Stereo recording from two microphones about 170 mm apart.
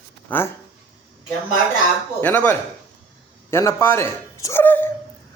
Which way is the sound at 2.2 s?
10° left (ahead or behind).